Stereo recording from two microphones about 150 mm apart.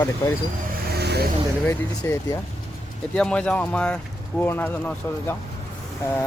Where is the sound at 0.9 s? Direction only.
90° right.